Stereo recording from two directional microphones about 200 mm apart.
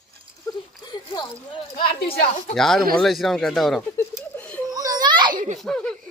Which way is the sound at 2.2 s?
40° left (ahead or behind).